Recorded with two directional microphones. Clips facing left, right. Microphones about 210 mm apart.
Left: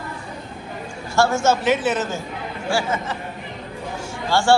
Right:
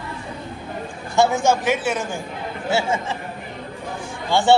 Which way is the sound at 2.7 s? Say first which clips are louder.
Right 1 dB; 25° right (ahead or behind).